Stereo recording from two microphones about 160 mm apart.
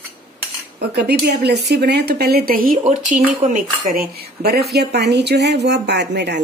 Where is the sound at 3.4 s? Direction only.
55° right (ahead or behind).